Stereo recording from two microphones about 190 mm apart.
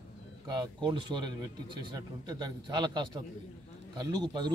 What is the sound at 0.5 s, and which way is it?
A man's voice, 25° right (ahead or behind).